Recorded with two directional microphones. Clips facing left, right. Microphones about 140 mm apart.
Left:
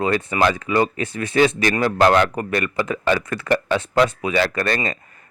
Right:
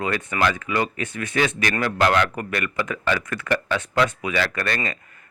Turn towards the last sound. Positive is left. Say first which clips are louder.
# left 4 dB
turn(degrees=35)  # may be behind; listen again after turning